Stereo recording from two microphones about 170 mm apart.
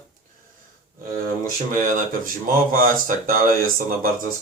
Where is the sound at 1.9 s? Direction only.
55° right (ahead or behind).